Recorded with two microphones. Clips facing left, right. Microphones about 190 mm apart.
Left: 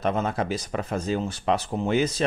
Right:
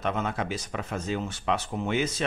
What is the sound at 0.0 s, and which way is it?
Speech, 35° left (ahead or behind).